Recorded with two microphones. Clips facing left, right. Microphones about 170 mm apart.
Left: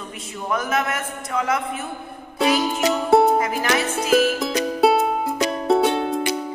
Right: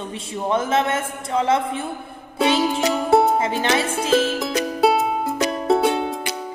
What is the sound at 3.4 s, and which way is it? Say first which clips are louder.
Speech: right 1 dB; 25° right (ahead or behind).